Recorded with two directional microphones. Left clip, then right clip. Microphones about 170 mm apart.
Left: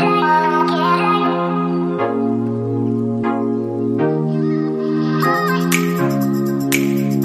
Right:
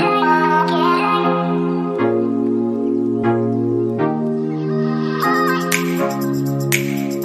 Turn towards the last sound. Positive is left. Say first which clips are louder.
# left 2 dB
turn(degrees=0)  # may be behind; listen again after turning